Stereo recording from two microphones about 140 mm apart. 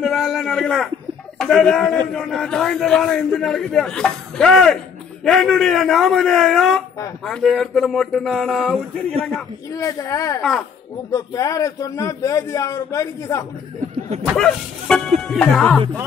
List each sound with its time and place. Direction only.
0.0 s a sound: centre (ahead or behind)
1.4 s a man's voice: 5° left (ahead or behind)
9.7 s a man's voice: 25° left (ahead or behind)
14.3 s a man's voice: 5° left (ahead or behind)
15.2 s music: 5° left (ahead or behind)